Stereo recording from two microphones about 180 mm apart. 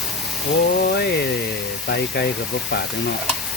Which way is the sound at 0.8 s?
60° left (ahead or behind).